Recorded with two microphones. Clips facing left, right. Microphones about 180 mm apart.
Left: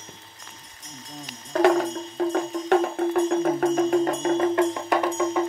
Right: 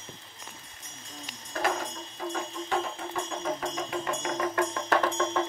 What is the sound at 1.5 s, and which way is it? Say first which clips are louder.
Music: left 11 dB; 65° left (ahead or behind).